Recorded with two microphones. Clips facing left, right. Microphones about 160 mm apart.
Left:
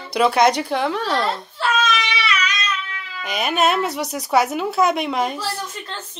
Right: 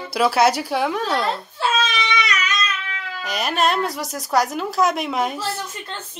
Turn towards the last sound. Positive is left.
turn(degrees=0)  # may be behind; listen again after turning